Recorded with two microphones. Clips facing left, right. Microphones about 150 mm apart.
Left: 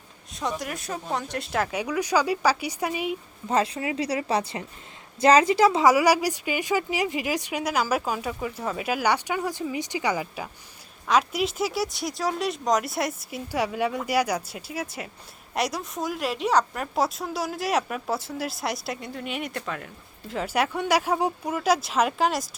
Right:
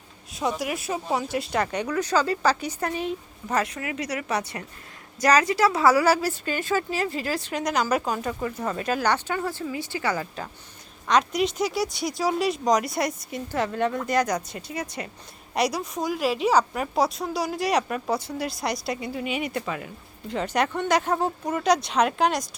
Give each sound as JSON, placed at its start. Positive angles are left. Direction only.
{"t": 0.3, "sound": "speech", "side_deg": -5}
{"t": 3.5, "sound": "a woman's voice", "side_deg": 25}